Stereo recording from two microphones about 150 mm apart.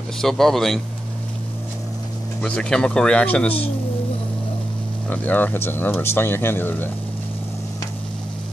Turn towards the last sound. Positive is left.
turn(degrees=15)  # may be behind; listen again after turning